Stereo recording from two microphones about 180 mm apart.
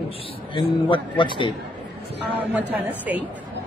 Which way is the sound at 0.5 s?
25° left (ahead or behind).